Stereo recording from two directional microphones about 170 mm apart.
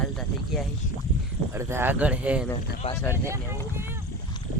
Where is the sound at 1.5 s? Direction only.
15° right (ahead or behind).